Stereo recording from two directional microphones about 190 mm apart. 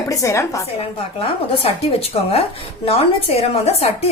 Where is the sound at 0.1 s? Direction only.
15° left (ahead or behind).